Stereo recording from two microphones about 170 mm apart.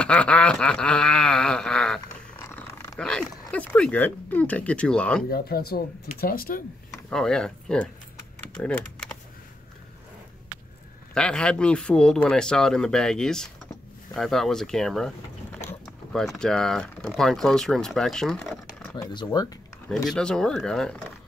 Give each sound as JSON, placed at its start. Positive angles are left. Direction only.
{"t": 0.0, "sound": "a sound", "side_deg": 5}
{"t": 3.0, "sound": "speech", "side_deg": 5}
{"t": 5.3, "sound": "speech", "side_deg": 65}
{"t": 7.1, "sound": "speech", "side_deg": 5}
{"t": 8.4, "sound": "typing", "side_deg": 10}
{"t": 11.1, "sound": "speech", "side_deg": 5}
{"t": 18.9, "sound": "speech", "side_deg": 20}
{"t": 20.1, "sound": "speech", "side_deg": 5}